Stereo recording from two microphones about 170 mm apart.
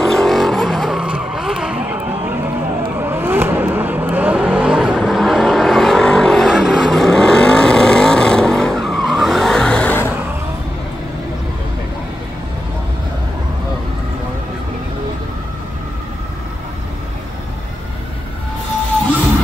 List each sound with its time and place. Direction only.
0.0 s vehicle: 5° left (ahead or behind)